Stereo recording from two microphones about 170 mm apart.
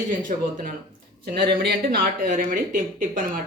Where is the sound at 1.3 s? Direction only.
60° right (ahead or behind).